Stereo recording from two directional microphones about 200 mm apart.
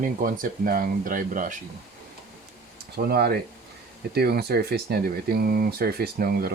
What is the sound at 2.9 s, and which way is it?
Speech, 50° right (ahead or behind).